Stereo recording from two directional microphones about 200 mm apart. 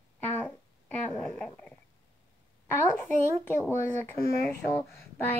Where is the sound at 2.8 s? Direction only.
15° left (ahead or behind).